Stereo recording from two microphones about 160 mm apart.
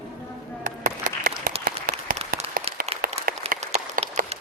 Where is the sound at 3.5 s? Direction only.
50° right (ahead or behind).